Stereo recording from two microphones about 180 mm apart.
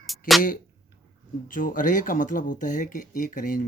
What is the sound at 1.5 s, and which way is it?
Speech, 50° left (ahead or behind).